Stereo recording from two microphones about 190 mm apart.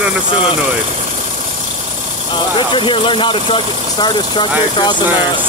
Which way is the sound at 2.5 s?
25° left (ahead or behind).